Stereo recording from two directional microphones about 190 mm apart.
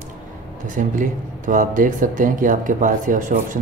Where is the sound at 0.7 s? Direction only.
45° right (ahead or behind).